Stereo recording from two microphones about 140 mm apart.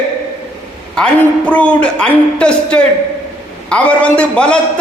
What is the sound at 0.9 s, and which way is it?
A man's voice, 10° left (ahead or behind).